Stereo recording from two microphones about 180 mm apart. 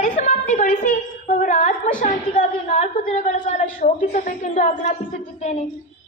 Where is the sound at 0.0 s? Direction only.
40° left (ahead or behind).